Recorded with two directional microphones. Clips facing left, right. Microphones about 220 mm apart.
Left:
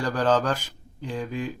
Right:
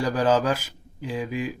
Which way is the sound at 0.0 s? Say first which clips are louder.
Right 1 dB; 10° right (ahead or behind).